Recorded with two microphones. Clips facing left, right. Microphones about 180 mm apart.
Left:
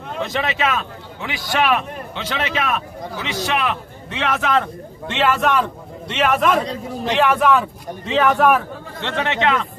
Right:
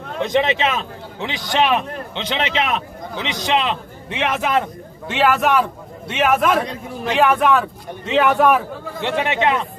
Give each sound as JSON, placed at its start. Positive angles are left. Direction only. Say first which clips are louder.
{"t": 0.2, "sound": "a man's voice", "louder": "right 4 dB", "side_deg": -20}
{"t": 9.0, "sound": "speech", "louder": "right 1 dB", "side_deg": -15}